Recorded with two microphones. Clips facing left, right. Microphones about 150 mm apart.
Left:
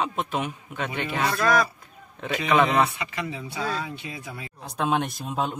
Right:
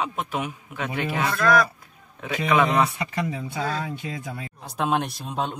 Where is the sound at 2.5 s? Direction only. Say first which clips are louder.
Even; centre (ahead or behind).